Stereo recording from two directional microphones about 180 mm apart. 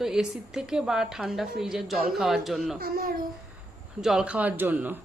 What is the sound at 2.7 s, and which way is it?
Speech, 55° right (ahead or behind).